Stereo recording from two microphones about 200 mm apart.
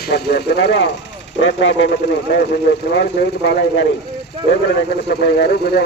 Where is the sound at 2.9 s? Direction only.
60° left (ahead or behind).